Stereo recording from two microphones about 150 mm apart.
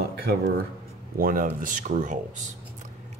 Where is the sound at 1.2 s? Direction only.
70° right (ahead or behind).